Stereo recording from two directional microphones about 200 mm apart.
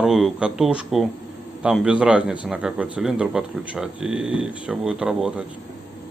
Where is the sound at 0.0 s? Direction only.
5° right (ahead or behind).